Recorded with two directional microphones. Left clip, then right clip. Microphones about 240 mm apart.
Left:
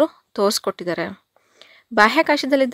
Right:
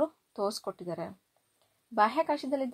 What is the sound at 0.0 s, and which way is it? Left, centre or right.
Speech, left.